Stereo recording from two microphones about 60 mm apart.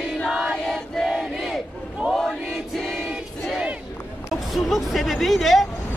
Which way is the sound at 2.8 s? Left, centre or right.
Centre.